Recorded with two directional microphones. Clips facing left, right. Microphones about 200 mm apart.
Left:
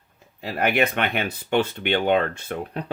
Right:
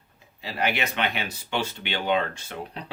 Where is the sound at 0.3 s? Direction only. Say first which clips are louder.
Left 6 dB; 50° left (ahead or behind).